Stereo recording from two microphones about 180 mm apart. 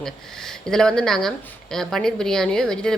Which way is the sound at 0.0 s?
Centre (ahead or behind).